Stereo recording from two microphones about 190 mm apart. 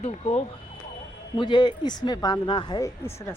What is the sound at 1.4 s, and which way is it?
Speech, 25° left (ahead or behind).